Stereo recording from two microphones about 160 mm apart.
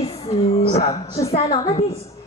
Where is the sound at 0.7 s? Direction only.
40° left (ahead or behind).